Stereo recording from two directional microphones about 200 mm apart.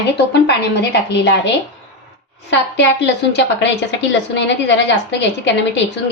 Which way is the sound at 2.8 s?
60° left (ahead or behind).